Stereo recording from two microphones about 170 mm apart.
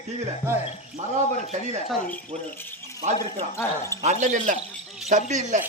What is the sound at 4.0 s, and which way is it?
A man's voice, 40° right (ahead or behind).